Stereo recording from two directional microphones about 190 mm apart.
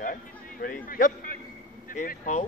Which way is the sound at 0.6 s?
45° left (ahead or behind).